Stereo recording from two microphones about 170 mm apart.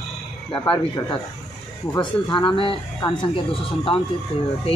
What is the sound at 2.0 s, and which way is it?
Speech, 30° left (ahead or behind).